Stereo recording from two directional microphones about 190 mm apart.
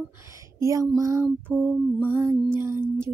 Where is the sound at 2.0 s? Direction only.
10° right (ahead or behind).